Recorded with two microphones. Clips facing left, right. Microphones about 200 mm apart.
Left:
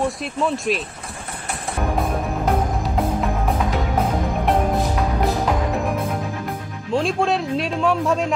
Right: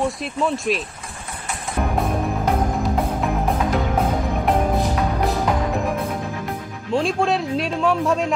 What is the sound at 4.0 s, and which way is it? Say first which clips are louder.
Music: even; centre (ahead or behind).